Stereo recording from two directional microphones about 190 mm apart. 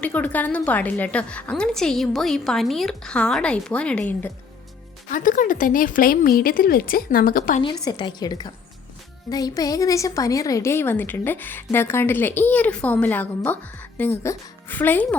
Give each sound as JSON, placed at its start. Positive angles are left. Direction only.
{"t": 0.0, "sound": "a woman's voice", "side_deg": 10}
{"t": 5.1, "sound": "speech", "side_deg": 45}
{"t": 7.6, "sound": "a woman's voice", "side_deg": 25}